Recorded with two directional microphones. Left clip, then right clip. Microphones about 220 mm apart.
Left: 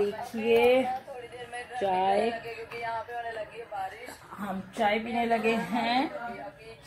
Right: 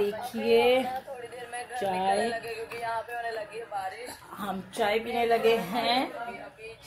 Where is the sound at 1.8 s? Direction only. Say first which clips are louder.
Left 1 dB; 30° left (ahead or behind).